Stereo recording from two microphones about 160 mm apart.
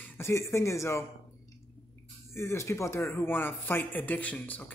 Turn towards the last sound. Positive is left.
turn(degrees=10)  # may be behind; listen again after turning